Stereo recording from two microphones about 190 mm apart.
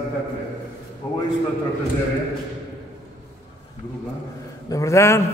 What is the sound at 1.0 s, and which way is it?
Speech, 15° left (ahead or behind).